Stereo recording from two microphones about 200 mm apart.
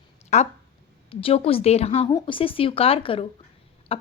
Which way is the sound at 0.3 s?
35° left (ahead or behind).